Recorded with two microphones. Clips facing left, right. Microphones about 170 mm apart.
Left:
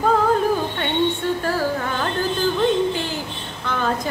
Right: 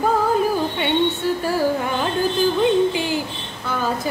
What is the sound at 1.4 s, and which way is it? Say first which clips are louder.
Carnatic music: right 2 dB; 15° right (ahead or behind).